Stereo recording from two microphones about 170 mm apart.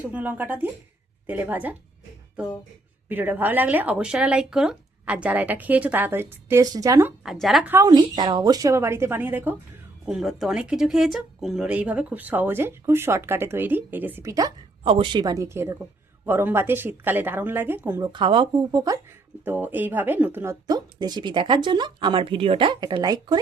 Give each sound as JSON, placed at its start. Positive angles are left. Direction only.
{"t": 0.0, "sound": "speech", "side_deg": -10}
{"t": 3.1, "sound": "speech", "side_deg": -10}
{"t": 7.3, "sound": "a woman's voice", "side_deg": 0}
{"t": 7.7, "sound": "speech", "side_deg": -20}
{"t": 14.8, "sound": "speech", "side_deg": -30}
{"t": 18.0, "sound": "speech", "side_deg": -30}
{"t": 19.5, "sound": "speech", "side_deg": -10}